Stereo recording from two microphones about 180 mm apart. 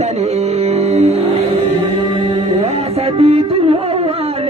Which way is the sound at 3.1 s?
35° right (ahead or behind).